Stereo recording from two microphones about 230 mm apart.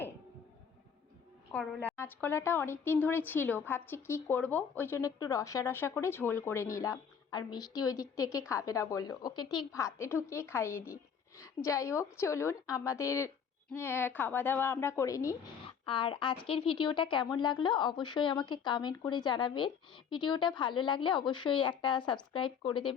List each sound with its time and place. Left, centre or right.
1.5 s a woman's voice: centre; by 23.0 s left